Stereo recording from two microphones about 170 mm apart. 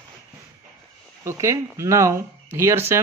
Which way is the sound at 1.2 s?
15° right (ahead or behind).